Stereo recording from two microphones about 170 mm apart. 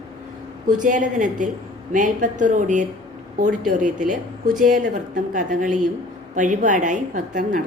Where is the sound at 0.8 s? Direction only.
50° right (ahead or behind).